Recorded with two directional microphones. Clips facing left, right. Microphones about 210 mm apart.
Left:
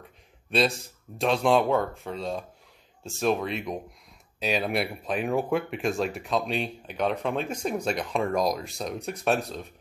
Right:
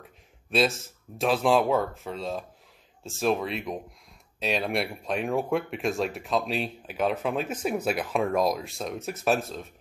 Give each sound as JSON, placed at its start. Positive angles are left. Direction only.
{"t": 0.5, "sound": "speech", "side_deg": 0}